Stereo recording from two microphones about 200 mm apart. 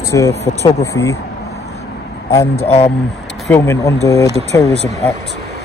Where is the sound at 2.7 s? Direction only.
25° left (ahead or behind).